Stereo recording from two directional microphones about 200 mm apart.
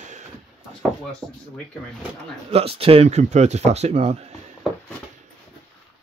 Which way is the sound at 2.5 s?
30° right (ahead or behind).